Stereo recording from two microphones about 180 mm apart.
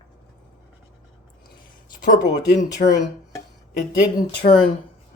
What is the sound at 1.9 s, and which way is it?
Speech, 45° left (ahead or behind).